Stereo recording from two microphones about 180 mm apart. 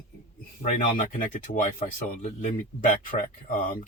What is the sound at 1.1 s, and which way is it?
Speech, 45° left (ahead or behind).